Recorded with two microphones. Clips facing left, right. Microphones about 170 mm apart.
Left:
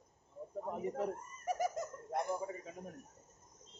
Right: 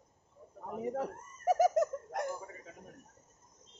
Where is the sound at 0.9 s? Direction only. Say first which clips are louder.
Right 1 dB; 90° right.